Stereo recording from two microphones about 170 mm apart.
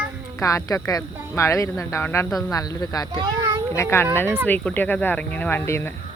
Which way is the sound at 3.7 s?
15° left (ahead or behind).